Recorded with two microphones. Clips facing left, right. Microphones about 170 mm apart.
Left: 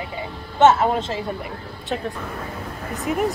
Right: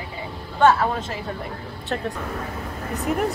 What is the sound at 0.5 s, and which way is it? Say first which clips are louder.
Speech: left 3 dB; 25° left (ahead or behind).